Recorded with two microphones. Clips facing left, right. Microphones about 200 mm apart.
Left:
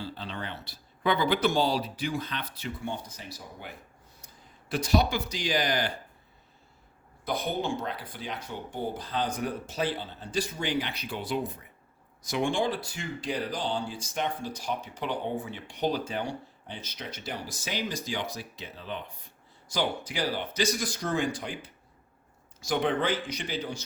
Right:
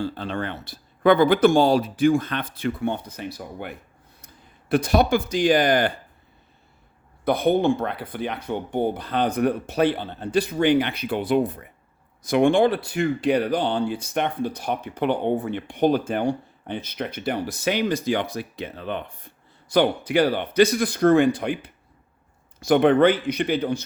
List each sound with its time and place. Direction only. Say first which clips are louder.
0.0 s speech: right 10 dB; 50° right (ahead or behind)
7.3 s speech: right 11 dB; 60° right (ahead or behind)